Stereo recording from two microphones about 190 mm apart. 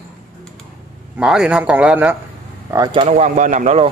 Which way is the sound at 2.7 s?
20° right (ahead or behind).